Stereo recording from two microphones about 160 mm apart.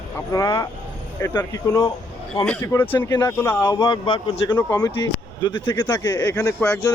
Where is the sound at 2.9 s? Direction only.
25° left (ahead or behind).